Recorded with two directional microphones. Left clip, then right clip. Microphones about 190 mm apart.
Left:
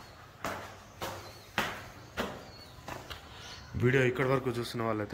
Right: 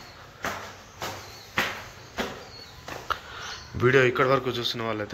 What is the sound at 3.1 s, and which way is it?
A man's voice, 10° left (ahead or behind).